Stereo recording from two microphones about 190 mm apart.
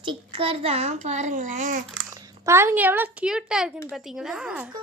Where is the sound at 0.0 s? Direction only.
25° right (ahead or behind); by 1.8 s 40° right (ahead or behind).